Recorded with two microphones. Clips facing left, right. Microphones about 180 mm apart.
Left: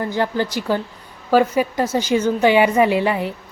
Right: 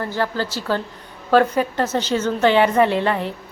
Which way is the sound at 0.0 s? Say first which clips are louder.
Left 2 dB; 15° left (ahead or behind).